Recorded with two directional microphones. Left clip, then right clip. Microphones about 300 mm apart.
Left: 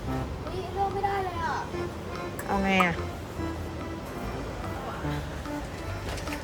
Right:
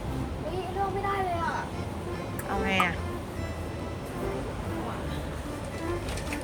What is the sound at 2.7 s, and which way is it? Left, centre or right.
Speech, centre.